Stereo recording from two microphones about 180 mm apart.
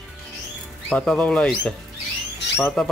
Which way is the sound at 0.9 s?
5° left (ahead or behind).